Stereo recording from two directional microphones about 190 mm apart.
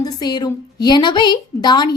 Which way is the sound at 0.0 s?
20° left (ahead or behind).